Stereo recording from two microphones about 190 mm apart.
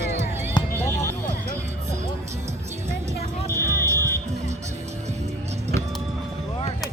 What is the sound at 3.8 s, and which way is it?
Music, 15° right (ahead or behind).